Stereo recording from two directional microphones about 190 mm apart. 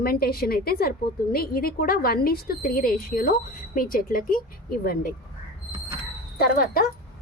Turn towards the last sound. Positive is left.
turn(degrees=55)  # may be behind; listen again after turning